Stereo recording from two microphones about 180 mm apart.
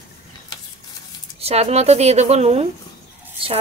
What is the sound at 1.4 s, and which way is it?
Speech, 35° right (ahead or behind).